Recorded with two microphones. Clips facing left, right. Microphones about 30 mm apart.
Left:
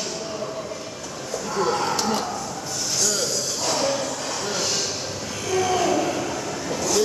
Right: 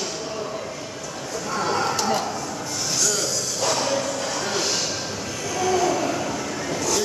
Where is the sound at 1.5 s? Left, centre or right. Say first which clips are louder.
Left 1 dB; centre.